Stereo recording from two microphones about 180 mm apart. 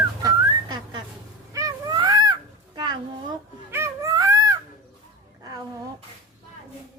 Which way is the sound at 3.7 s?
15° right (ahead or behind).